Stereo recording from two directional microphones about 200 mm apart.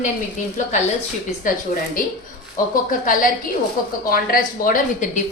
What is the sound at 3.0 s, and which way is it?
A woman's voice, 45° left (ahead or behind).